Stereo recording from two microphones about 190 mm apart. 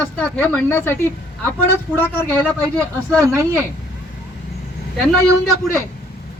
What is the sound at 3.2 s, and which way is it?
Speech, 15° right (ahead or behind).